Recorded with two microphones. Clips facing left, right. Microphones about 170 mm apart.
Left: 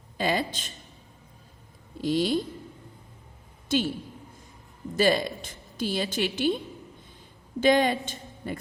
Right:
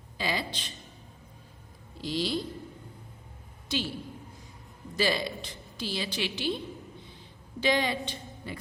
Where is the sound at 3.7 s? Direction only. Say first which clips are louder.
Left 7 dB; 50° left (ahead or behind).